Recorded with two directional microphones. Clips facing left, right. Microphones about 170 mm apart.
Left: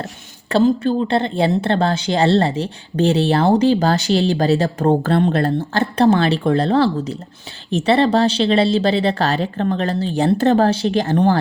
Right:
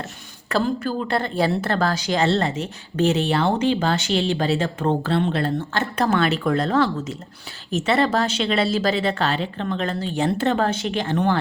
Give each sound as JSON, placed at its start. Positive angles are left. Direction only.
{"t": 0.4, "sound": "a woman's voice", "side_deg": 30}